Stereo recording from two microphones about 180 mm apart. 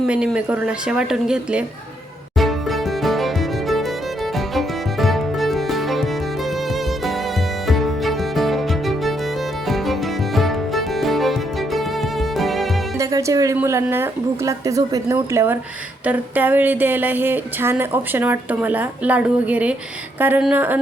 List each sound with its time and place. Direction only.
0.0 s speech: centre (ahead or behind)
2.4 s music: centre (ahead or behind)
7.7 s music: centre (ahead or behind)
13.0 s a woman's voice: 20° right (ahead or behind)